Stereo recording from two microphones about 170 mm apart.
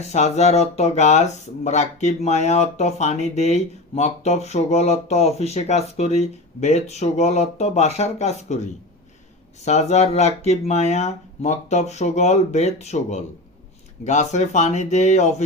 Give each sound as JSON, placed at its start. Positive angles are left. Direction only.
{"t": 0.0, "sound": "speech", "side_deg": 40}